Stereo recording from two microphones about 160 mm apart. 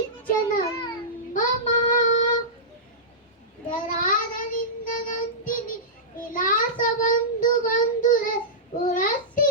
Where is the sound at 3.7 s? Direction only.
55° left (ahead or behind).